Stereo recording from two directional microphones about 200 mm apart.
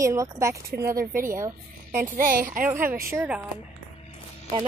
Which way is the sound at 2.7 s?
10° right (ahead or behind).